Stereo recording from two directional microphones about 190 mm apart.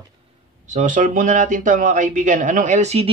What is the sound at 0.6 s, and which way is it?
Speech, 40° right (ahead or behind).